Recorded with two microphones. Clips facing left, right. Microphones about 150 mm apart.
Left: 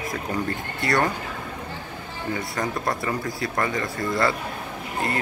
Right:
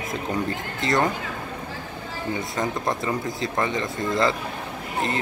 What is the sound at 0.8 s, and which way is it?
Speech, 20° right (ahead or behind).